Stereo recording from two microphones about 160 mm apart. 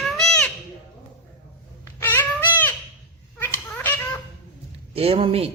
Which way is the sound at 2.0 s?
10° left (ahead or behind).